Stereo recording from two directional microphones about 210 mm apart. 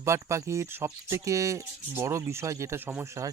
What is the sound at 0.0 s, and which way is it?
Speech, 15° right (ahead or behind).